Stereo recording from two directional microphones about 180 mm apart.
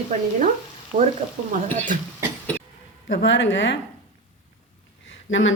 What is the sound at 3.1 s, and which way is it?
Speech, 90° left.